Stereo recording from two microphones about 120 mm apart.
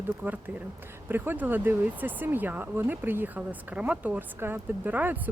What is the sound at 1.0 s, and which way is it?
Speech, 15° right (ahead or behind).